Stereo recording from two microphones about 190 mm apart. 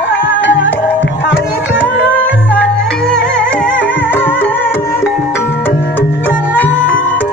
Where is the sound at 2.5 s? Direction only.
5° left (ahead or behind).